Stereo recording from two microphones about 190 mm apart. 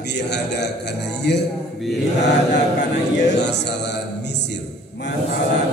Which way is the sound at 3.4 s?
65° left (ahead or behind).